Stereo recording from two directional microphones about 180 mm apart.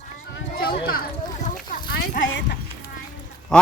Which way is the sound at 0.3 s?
60° left (ahead or behind).